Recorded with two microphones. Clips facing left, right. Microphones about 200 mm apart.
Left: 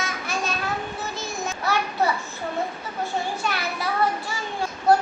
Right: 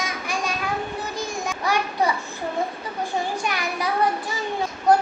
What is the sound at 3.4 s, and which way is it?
Speech, 15° right (ahead or behind).